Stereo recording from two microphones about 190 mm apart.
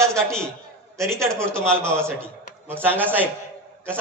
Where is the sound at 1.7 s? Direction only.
15° right (ahead or behind).